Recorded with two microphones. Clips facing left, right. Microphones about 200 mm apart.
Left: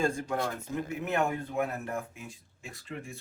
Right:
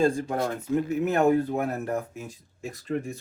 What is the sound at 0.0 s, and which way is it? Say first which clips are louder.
Speech: right 6 dB; 40° right (ahead or behind).